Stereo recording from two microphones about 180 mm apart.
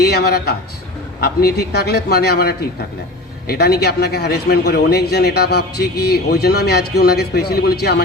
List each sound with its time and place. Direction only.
0.0 s a man's voice: 65° left (ahead or behind)